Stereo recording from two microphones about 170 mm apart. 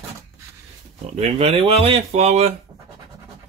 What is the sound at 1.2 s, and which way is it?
Speech, 35° right (ahead or behind).